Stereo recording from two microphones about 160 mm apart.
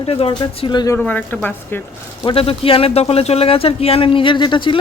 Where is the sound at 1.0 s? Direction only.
10° left (ahead or behind).